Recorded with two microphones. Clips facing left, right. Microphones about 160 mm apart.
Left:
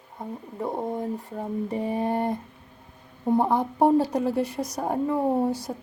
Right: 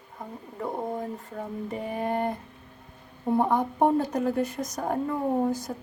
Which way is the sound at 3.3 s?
15° left (ahead or behind).